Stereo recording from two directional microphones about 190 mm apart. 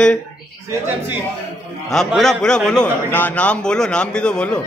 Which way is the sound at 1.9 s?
Centre (ahead or behind).